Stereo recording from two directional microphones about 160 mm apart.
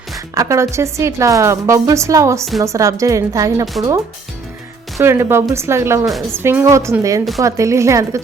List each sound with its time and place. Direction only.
0.3 s a woman's voice: 20° right (ahead or behind)
4.9 s a woman's voice: 15° right (ahead or behind)